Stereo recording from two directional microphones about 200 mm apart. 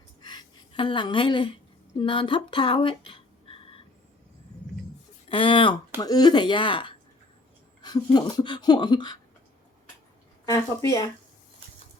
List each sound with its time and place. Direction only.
0.2 s a sound: 20° left (ahead or behind)
2.0 s speech: 25° left (ahead or behind)
5.3 s speech: 25° left (ahead or behind)
10.4 s speech: 15° left (ahead or behind)